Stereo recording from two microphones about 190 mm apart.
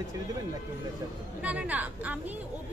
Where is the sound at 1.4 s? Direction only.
5° right (ahead or behind).